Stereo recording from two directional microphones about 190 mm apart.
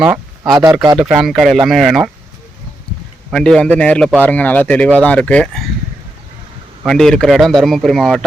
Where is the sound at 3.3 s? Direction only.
5° left (ahead or behind).